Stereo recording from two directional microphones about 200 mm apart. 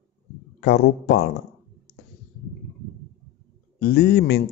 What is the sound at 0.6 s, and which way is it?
Speech, 55° left (ahead or behind).